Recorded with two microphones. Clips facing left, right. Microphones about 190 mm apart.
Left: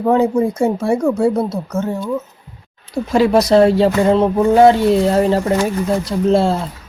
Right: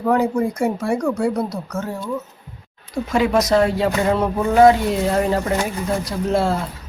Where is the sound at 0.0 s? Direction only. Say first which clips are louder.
Left 4 dB; 20° left (ahead or behind).